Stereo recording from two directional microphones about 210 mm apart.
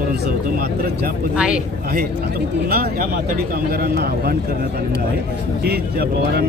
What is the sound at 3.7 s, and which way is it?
Speech, 50° right (ahead or behind).